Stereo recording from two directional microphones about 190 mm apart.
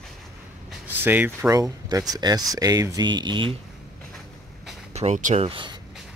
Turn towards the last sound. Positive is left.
turn(degrees=-25)  # may be behind; listen again after turning